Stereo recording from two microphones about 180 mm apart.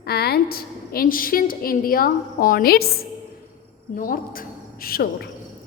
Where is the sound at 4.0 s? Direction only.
50° left (ahead or behind).